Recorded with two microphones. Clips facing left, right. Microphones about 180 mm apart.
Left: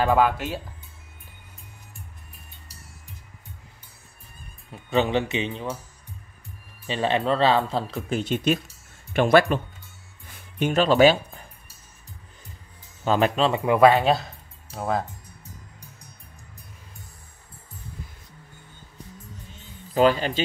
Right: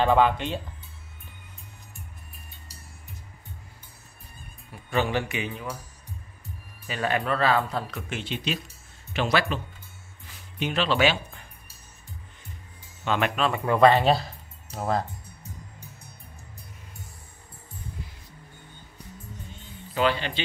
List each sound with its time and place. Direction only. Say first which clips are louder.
0.0 s speech: even; 5° left (ahead or behind)
4.6 s speech: left 4 dB; 20° left (ahead or behind)
6.9 s speech: left 4 dB; 25° left (ahead or behind); by 9.6 s 50° left (ahead or behind)
10.2 s music: left 5 dB; 50° left (ahead or behind)
13.0 s speech: left 4 dB; 35° left (ahead or behind)
13.5 s speech: left 1 dB; 10° left (ahead or behind)
19.9 s speech: left 6 dB; 40° left (ahead or behind)